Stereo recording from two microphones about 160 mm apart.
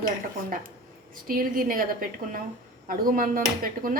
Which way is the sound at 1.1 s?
60° right (ahead or behind).